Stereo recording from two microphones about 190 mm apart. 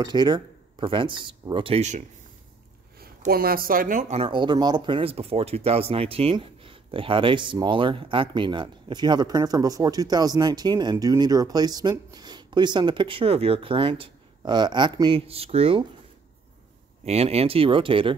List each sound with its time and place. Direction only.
0.0 s speech: 20° right (ahead or behind)
3.3 s speech: 50° right (ahead or behind)
4.2 s speech: 25° right (ahead or behind)
17.0 s speech: 35° right (ahead or behind)